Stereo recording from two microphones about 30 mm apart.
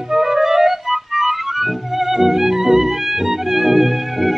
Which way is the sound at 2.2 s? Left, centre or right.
Centre.